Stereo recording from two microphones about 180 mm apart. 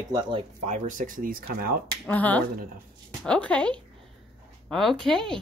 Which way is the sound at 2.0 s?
10° left (ahead or behind).